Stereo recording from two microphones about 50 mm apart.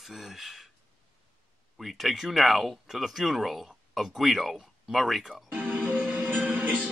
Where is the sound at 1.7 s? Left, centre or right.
Centre.